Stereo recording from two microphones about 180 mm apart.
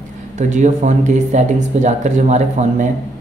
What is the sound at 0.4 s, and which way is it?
Speech, 40° right (ahead or behind).